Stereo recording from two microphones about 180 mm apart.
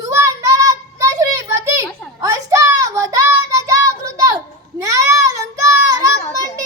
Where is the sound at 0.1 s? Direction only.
15° right (ahead or behind).